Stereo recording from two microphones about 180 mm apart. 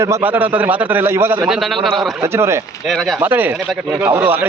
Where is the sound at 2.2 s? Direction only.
15° right (ahead or behind).